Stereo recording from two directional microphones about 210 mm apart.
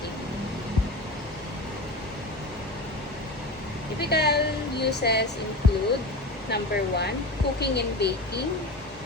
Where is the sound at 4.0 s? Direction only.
50° left (ahead or behind).